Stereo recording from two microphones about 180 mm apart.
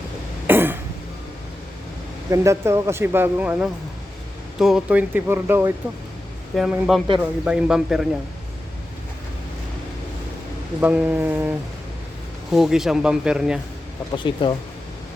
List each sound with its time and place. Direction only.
0.4 s cough: 10° right (ahead or behind)
2.3 s speech: 15° right (ahead or behind)
6.6 s speech: centre (ahead or behind)
10.8 s speech: 10° right (ahead or behind)
14.1 s speech: 25° left (ahead or behind)